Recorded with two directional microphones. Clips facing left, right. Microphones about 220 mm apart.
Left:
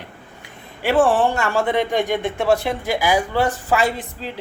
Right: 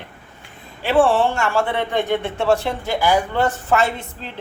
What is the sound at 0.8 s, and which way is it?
Speech, 15° left (ahead or behind).